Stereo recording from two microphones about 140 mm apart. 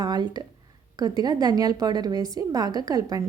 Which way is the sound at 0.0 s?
30° right (ahead or behind).